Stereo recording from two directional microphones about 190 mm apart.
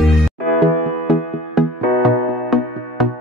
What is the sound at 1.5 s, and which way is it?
Music, centre (ahead or behind).